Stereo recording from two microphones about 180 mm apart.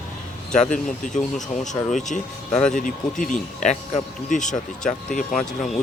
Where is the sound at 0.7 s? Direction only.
45° left (ahead or behind).